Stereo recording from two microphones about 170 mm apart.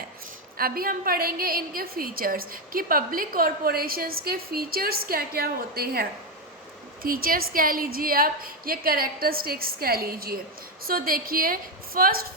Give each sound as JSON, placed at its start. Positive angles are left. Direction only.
{"t": 0.5, "sound": "a woman's voice", "side_deg": -60}